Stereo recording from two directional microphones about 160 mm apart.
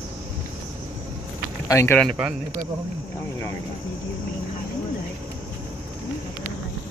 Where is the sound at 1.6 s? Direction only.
15° left (ahead or behind).